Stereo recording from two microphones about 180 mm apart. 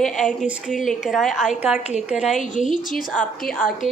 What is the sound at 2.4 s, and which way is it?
Speech, 45° left (ahead or behind).